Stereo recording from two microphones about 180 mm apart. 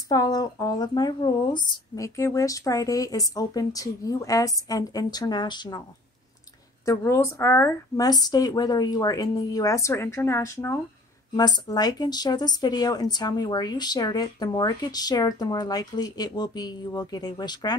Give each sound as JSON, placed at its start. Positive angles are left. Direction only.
{"t": 0.1, "sound": "speech", "side_deg": 20}
{"t": 6.9, "sound": "a woman's voice", "side_deg": 15}